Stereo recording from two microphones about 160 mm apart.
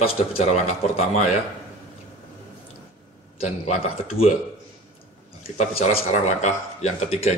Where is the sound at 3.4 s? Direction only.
40° left (ahead or behind).